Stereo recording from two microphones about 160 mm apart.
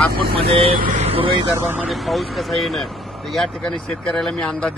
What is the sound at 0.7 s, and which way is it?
Speech, 60° right (ahead or behind).